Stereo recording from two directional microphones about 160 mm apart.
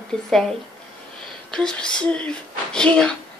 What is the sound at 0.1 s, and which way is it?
A woman's voice, centre (ahead or behind).